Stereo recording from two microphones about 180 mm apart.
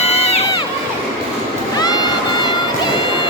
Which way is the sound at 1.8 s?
20° left (ahead or behind).